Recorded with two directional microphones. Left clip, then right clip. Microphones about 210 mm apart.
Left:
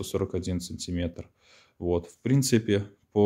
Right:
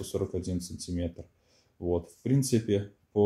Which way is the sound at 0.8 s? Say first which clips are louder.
Left 3 dB; 15° left (ahead or behind).